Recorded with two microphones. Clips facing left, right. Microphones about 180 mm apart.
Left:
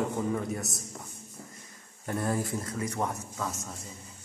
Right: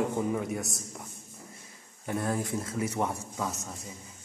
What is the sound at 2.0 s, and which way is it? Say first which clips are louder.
Speech: even; centre (ahead or behind).